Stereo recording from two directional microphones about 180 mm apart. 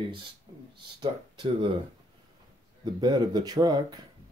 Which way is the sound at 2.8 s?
25° right (ahead or behind).